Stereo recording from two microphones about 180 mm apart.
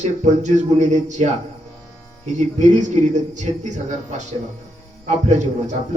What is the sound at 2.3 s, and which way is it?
A man's voice, 40° right (ahead or behind).